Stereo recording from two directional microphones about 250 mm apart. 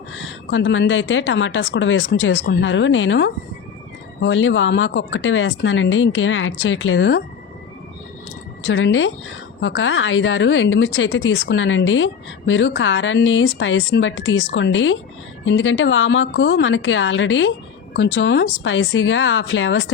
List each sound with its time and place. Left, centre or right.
0.1 s a woman's voice: left
8.6 s a woman's voice: left